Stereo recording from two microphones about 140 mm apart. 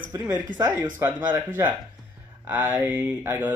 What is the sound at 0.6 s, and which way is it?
Speech, 15° right (ahead or behind).